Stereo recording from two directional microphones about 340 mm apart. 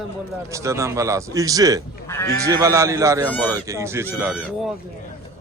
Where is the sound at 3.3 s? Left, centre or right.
Centre.